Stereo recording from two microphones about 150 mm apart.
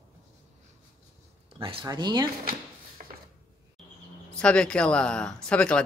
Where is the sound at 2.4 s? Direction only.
70° right (ahead or behind).